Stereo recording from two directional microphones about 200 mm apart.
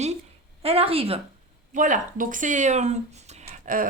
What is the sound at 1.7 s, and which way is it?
A woman's voice, 40° right (ahead or behind).